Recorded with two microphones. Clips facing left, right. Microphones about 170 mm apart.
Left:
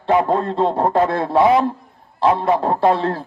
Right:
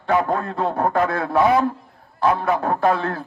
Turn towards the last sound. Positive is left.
turn(degrees=30)  # may be behind; listen again after turning